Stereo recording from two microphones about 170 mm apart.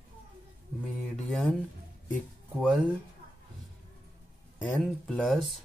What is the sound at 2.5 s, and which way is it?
Speech, 5° right (ahead or behind).